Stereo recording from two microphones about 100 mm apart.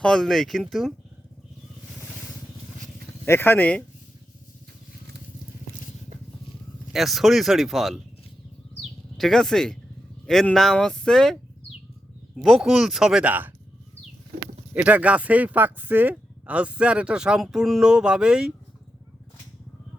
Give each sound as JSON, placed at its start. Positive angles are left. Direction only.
{"t": 0.0, "sound": "speech", "side_deg": 5}
{"t": 3.2, "sound": "speech", "side_deg": 20}
{"t": 6.9, "sound": "speech", "side_deg": 0}
{"t": 8.8, "sound": "a sound", "side_deg": 5}
{"t": 10.2, "sound": "speech", "side_deg": 5}
{"t": 12.4, "sound": "speech", "side_deg": -5}
{"t": 14.7, "sound": "speech", "side_deg": -15}